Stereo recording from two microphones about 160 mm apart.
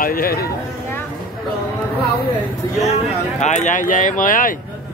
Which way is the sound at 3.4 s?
45° left (ahead or behind).